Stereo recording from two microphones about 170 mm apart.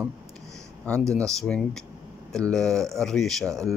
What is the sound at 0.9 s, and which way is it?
Speech, 5° left (ahead or behind).